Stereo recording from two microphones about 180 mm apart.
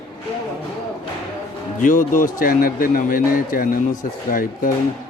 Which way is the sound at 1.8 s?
45° left (ahead or behind).